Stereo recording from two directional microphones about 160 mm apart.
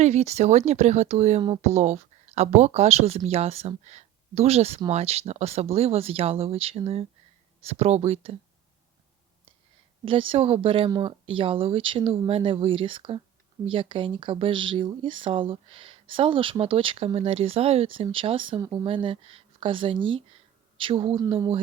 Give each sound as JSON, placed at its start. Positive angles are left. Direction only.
{"t": 0.0, "sound": "speech", "side_deg": -45}
{"t": 10.1, "sound": "speech", "side_deg": -35}